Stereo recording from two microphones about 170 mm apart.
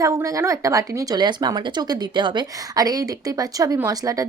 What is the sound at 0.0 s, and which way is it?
Speech, 20° right (ahead or behind).